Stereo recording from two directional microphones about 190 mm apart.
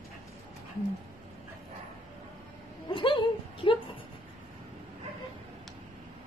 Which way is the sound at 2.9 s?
25° left (ahead or behind).